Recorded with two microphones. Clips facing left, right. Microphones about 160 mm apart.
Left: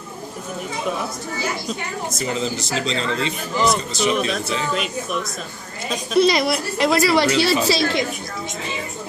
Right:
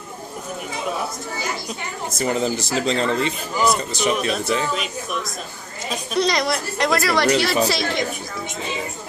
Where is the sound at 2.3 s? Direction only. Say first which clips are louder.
Right 3 dB; 55° right (ahead or behind).